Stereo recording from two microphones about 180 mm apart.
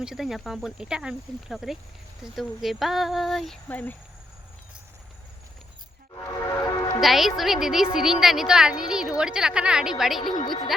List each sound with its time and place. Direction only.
0.0 s a woman's voice: centre (ahead or behind)
6.1 s train: 20° left (ahead or behind)
7.0 s a woman's voice: centre (ahead or behind)
10.3 s a woman's voice: 25° left (ahead or behind)